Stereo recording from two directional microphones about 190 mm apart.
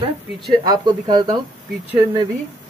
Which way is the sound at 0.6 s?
20° right (ahead or behind).